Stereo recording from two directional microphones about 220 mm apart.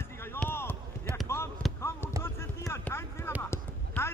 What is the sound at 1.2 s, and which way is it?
Basketball bounce, 10° left (ahead or behind).